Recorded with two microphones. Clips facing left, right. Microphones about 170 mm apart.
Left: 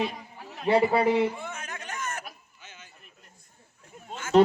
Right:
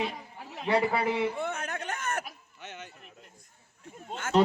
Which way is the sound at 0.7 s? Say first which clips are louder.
Left 5 dB; 25° left (ahead or behind).